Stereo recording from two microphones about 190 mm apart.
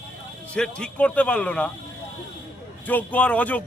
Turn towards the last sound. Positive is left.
turn(degrees=10)  # may be behind; listen again after turning